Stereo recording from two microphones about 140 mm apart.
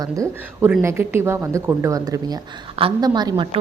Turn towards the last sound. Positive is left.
turn(degrees=-30)  # may be behind; listen again after turning